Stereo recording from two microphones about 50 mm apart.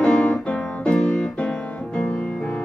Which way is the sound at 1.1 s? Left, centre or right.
Left.